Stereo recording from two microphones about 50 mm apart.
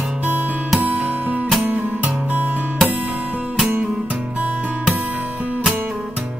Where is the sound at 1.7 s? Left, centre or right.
Right.